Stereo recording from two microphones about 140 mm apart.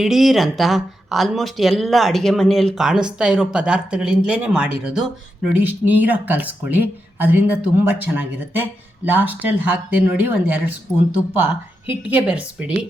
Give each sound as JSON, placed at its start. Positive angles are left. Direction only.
{"t": 0.0, "sound": "speech", "side_deg": 0}
{"t": 12.0, "sound": "speech", "side_deg": -10}